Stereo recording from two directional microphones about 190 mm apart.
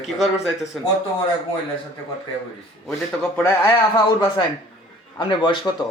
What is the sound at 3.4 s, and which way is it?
Speech, 20° left (ahead or behind).